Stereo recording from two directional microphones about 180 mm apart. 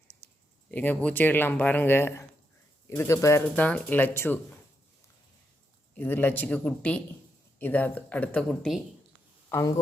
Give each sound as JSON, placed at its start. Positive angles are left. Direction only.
{"t": 0.7, "sound": "speech", "side_deg": 10}
{"t": 6.0, "sound": "speech", "side_deg": 10}
{"t": 9.5, "sound": "speech", "side_deg": 20}